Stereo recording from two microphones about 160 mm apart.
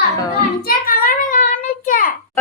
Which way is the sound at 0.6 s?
65° left (ahead or behind).